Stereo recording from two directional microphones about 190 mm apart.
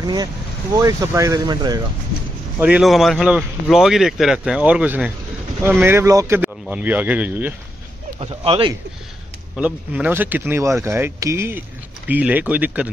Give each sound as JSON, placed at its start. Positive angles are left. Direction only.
{"t": 0.0, "sound": "speech", "side_deg": -20}
{"t": 2.6, "sound": "speech", "side_deg": -5}
{"t": 8.2, "sound": "speech", "side_deg": -30}
{"t": 9.6, "sound": "speech", "side_deg": -5}